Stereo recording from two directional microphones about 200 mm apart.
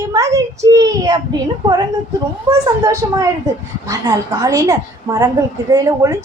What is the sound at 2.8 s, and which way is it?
A woman's voice, 15° right (ahead or behind).